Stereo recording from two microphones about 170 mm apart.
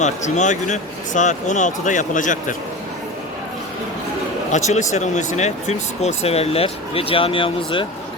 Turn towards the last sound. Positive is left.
turn(degrees=30)  # may be behind; listen again after turning